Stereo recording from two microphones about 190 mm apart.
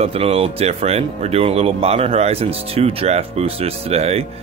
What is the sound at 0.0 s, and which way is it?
Speech, 30° right (ahead or behind).